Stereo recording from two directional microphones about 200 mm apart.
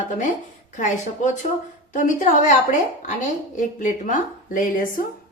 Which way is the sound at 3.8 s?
40° left (ahead or behind).